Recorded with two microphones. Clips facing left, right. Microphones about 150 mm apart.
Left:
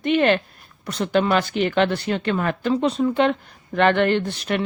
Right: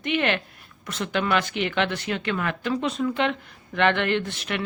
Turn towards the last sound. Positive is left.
turn(degrees=35)  # may be behind; listen again after turning